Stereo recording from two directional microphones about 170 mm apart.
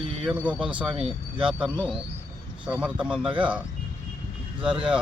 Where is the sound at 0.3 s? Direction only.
5° right (ahead or behind).